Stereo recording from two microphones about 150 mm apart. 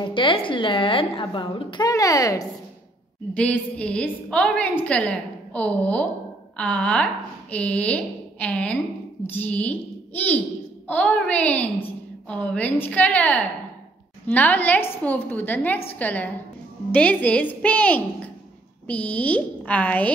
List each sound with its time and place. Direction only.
0.0 s a woman's voice: 35° left (ahead or behind)
3.3 s a woman's voice: 10° left (ahead or behind)